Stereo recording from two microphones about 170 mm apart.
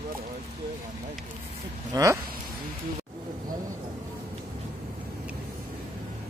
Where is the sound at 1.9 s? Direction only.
20° right (ahead or behind).